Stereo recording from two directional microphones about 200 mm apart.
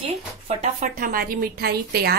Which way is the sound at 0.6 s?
40° right (ahead or behind).